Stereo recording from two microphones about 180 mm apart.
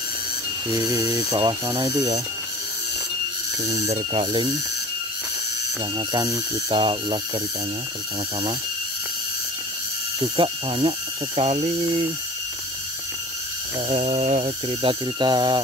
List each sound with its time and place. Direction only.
0.7 s speech: 20° right (ahead or behind)
3.6 s speech: 35° right (ahead or behind)
5.9 s speech: 20° right (ahead or behind)
10.2 s speech: 30° right (ahead or behind)
13.8 s speech: 35° right (ahead or behind)